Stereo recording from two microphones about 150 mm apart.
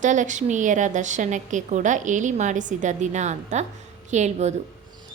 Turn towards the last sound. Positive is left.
turn(degrees=-50)  # may be behind; listen again after turning